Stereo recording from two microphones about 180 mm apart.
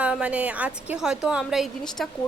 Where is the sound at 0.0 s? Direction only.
5° right (ahead or behind).